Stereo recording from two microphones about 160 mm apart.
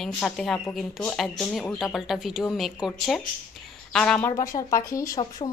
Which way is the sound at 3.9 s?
5° left (ahead or behind).